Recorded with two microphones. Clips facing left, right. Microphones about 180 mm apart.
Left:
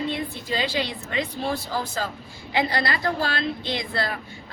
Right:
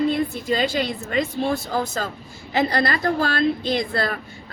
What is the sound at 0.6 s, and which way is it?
A woman's voice, 45° right (ahead or behind).